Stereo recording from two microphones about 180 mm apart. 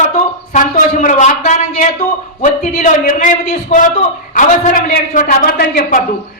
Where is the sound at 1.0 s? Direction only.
45° left (ahead or behind).